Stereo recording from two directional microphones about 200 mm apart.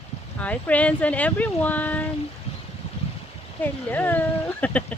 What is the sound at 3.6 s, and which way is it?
Speech, 10° left (ahead or behind).